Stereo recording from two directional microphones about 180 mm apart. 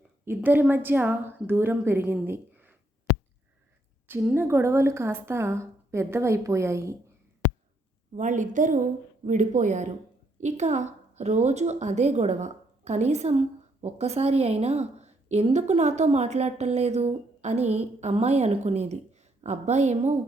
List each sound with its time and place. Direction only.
0.3 s a woman's voice: 10° right (ahead or behind)
4.1 s a woman's voice: 10° right (ahead or behind)
8.1 s a woman's voice: 45° right (ahead or behind)